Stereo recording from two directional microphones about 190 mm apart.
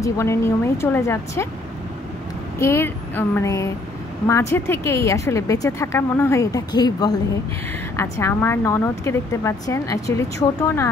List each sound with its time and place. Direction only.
0.0 s speech: 15° left (ahead or behind)
2.6 s speech: 15° left (ahead or behind)